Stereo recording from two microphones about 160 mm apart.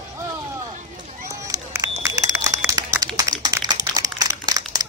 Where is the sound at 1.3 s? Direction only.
20° right (ahead or behind).